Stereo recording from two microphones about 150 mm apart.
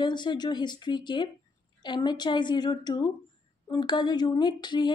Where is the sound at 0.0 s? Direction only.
30° left (ahead or behind).